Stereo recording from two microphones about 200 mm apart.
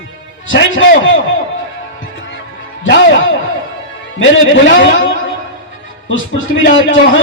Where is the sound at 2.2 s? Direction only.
65° left (ahead or behind).